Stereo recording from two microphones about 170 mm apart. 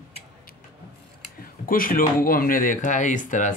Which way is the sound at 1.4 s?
55° left (ahead or behind).